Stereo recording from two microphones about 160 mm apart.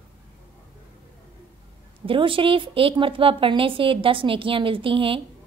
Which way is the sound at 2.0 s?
35° right (ahead or behind).